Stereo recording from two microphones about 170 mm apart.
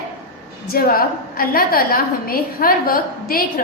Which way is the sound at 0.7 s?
60° left (ahead or behind).